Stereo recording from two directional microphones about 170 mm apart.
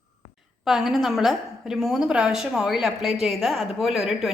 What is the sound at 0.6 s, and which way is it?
A woman's voice, centre (ahead or behind).